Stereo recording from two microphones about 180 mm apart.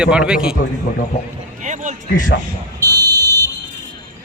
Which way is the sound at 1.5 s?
45° right (ahead or behind).